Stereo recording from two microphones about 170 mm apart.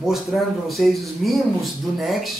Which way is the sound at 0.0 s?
Centre (ahead or behind).